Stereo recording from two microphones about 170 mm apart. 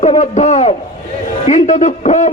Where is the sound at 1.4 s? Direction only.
45° left (ahead or behind).